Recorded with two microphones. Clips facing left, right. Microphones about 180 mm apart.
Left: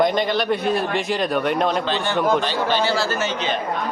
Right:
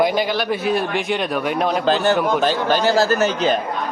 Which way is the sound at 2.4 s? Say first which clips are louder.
Right 4 dB; 45° right (ahead or behind).